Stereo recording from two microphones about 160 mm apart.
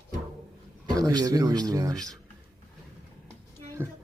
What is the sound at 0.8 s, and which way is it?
Speech, 25° right (ahead or behind).